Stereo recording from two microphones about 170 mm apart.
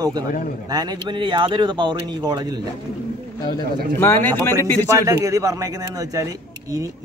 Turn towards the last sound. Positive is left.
turn(degrees=-20)  # may be behind; listen again after turning